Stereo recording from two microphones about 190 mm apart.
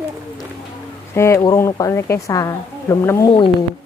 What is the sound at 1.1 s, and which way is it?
Speech, 15° left (ahead or behind).